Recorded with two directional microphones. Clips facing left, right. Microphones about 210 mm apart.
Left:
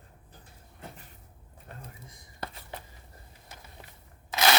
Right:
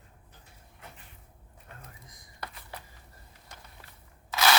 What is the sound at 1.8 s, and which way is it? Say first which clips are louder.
Whispering: left 3 dB; 25° left (ahead or behind).